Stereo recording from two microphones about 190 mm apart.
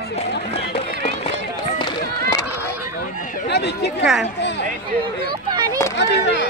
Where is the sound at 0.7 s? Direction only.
35° left (ahead or behind).